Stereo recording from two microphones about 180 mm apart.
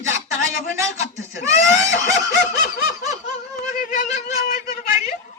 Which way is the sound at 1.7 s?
45° left (ahead or behind).